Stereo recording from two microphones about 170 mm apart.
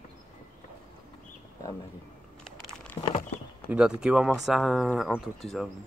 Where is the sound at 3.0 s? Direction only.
35° left (ahead or behind).